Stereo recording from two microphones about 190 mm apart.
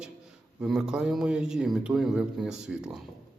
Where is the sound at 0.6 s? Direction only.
5° right (ahead or behind).